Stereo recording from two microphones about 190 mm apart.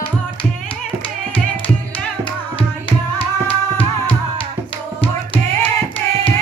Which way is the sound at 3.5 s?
10° left (ahead or behind).